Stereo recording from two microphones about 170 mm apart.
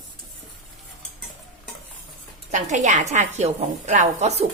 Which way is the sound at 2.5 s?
45° right (ahead or behind).